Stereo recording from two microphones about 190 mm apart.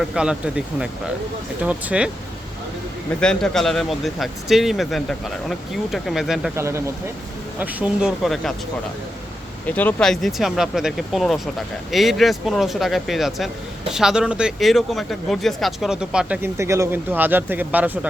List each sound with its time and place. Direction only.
0.0 s speech: 5° right (ahead or behind)
3.2 s speech: 5° left (ahead or behind)
6.6 s speech: 15° right (ahead or behind)
9.6 s speech: 10° left (ahead or behind); by 18.1 s 10° right (ahead or behind)